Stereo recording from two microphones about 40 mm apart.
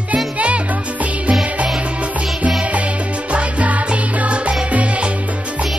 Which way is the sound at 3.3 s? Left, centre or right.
Right.